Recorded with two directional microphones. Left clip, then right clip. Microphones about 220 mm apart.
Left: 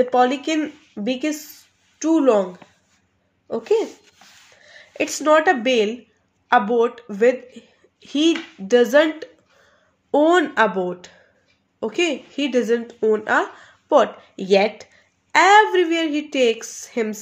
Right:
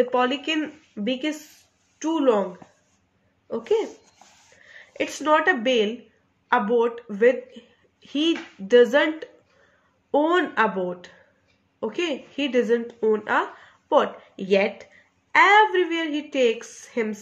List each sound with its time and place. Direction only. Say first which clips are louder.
0.1 s speech: left 5 dB; 45° left (ahead or behind)
3.4 s speech: left 4 dB; 45° left (ahead or behind)
8.6 s speech: left 2 dB; 45° left (ahead or behind)